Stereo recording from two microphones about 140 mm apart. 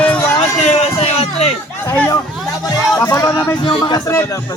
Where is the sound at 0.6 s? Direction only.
50° left (ahead or behind).